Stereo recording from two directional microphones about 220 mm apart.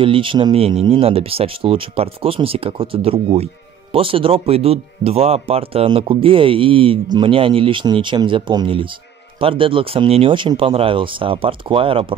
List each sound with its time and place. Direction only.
0.0 s speech: 25° right (ahead or behind)